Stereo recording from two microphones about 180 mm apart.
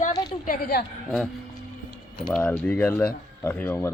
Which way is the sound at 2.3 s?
5° left (ahead or behind).